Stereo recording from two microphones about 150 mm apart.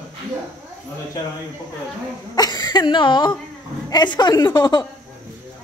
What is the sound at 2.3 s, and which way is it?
A woman's voice, 25° left (ahead or behind).